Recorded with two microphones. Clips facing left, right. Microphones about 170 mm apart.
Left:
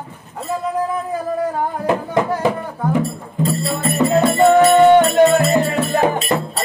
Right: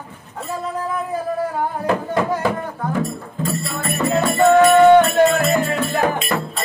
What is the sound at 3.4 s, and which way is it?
Music, 30° left (ahead or behind).